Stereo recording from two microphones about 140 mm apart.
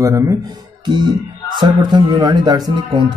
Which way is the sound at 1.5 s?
30° right (ahead or behind).